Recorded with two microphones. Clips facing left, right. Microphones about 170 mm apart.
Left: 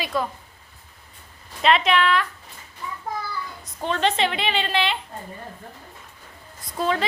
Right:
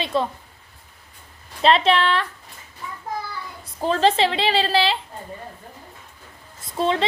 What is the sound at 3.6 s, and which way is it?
A woman's voice, 35° right (ahead or behind).